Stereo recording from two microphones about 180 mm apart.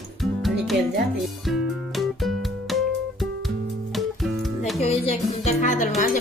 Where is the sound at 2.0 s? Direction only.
Centre (ahead or behind).